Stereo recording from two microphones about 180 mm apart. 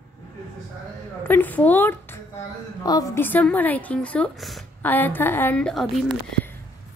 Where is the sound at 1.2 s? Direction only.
10° left (ahead or behind).